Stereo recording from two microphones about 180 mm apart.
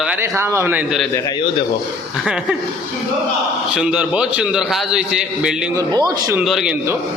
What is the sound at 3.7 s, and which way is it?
A man's voice, 5° right (ahead or behind).